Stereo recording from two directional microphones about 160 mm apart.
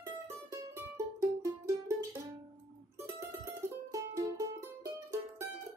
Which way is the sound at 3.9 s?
20° right (ahead or behind).